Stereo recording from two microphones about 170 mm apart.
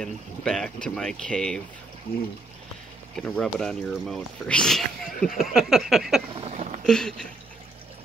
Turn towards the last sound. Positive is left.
turn(degrees=5)  # may be behind; listen again after turning